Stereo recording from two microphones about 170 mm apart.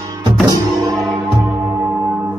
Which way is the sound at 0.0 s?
20° right (ahead or behind).